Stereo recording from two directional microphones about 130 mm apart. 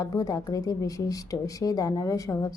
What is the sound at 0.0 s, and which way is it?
Speech, 25° left (ahead or behind).